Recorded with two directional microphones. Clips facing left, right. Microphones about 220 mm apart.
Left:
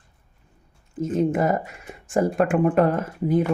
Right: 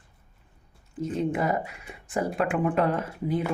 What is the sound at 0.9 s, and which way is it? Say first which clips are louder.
Speech: left 5 dB; 45° left (ahead or behind).